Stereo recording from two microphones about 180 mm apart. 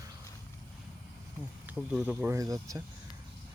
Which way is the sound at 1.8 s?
Centre (ahead or behind).